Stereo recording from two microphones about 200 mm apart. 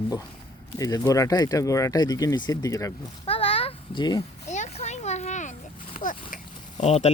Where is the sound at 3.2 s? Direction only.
30° left (ahead or behind).